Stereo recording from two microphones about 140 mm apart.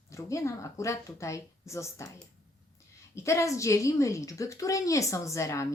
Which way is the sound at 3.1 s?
20° left (ahead or behind).